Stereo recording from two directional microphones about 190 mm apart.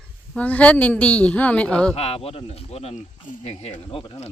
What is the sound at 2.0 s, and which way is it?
Speech, 30° left (ahead or behind).